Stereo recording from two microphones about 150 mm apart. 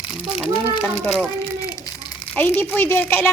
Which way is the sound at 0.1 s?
Centre (ahead or behind).